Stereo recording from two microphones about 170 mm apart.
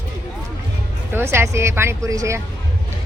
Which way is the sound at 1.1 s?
15° right (ahead or behind).